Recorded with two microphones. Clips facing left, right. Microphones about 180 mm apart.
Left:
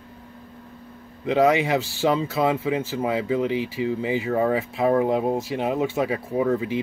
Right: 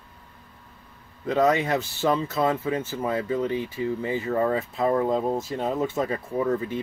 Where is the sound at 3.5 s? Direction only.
90° left.